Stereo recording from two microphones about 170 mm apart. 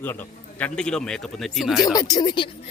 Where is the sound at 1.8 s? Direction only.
20° left (ahead or behind).